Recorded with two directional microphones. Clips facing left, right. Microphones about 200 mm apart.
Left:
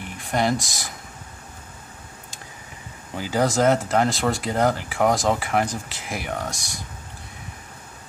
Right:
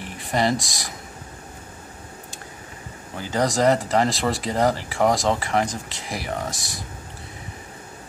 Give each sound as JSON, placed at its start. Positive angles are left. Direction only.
{"t": 0.0, "sound": "speech", "side_deg": 0}
{"t": 3.2, "sound": "speech", "side_deg": 5}